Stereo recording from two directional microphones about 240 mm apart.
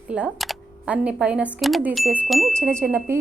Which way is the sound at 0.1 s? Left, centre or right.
Centre.